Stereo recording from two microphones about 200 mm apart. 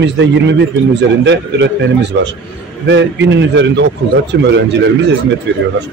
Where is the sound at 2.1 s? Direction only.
70° right (ahead or behind).